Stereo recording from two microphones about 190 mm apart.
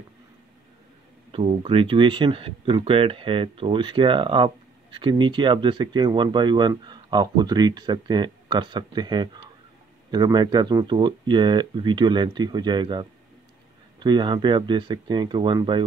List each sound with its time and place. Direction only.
1.3 s speech: 30° right (ahead or behind)